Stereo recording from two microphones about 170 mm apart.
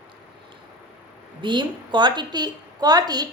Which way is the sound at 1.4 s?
25° right (ahead or behind).